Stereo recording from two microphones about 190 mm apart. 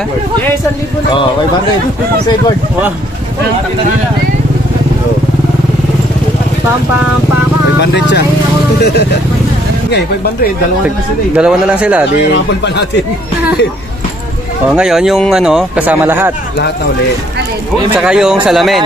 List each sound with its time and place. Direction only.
7.8 s speech: 65° left (ahead or behind)
11.3 s speech: 5° right (ahead or behind)
14.7 s speech: centre (ahead or behind)
17.9 s speech: 5° right (ahead or behind)